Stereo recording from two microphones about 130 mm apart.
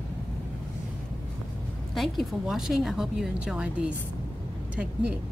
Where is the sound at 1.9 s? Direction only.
Centre (ahead or behind).